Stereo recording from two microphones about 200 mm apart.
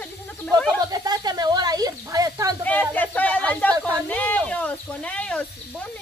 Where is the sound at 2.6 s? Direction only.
5° left (ahead or behind).